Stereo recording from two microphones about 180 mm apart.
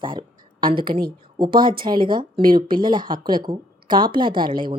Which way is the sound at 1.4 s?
25° right (ahead or behind).